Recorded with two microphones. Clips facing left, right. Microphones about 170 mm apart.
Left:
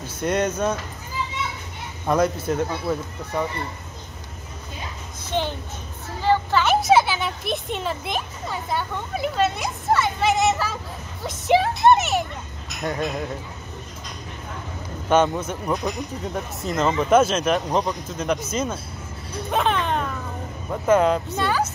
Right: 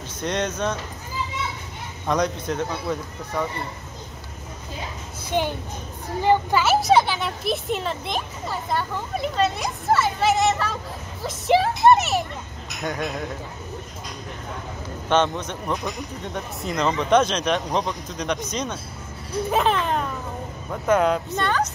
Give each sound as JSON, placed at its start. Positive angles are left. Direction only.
{"t": 0.2, "sound": "speech", "side_deg": 5}
{"t": 2.0, "sound": "a child's voice", "side_deg": 5}
{"t": 5.3, "sound": "a child's voice", "side_deg": -10}
{"t": 6.6, "sound": "a child's voice", "side_deg": 0}
{"t": 15.0, "sound": "a child's voice", "side_deg": 10}